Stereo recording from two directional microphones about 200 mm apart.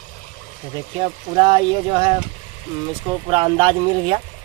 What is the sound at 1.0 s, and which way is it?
Speech, 25° right (ahead or behind).